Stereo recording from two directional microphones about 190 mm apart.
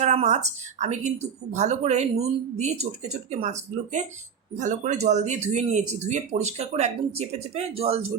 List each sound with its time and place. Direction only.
0.0 s speech: 35° right (ahead or behind)